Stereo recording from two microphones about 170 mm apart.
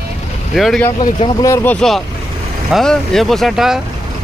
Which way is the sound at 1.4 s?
15° left (ahead or behind).